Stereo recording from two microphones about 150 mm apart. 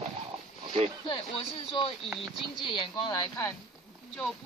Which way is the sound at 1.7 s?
35° left (ahead or behind).